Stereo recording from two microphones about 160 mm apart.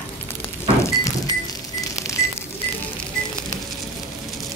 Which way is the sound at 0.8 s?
20° left (ahead or behind).